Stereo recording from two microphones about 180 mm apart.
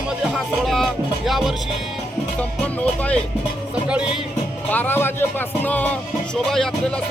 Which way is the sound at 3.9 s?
5° right (ahead or behind).